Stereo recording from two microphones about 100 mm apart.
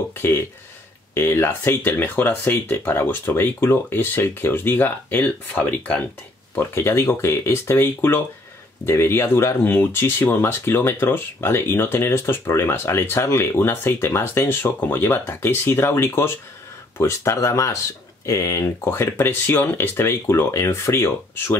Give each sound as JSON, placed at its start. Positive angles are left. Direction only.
{"t": 1.1, "sound": "speech", "side_deg": 25}
{"t": 6.5, "sound": "speech", "side_deg": 25}